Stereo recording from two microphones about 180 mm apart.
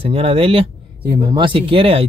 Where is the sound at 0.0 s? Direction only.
30° right (ahead or behind).